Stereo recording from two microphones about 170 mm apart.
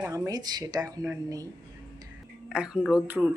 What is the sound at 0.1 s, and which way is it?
A woman's voice, 20° right (ahead or behind).